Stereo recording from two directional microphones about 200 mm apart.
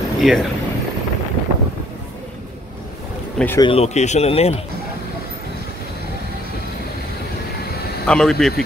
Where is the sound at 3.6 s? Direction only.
30° left (ahead or behind).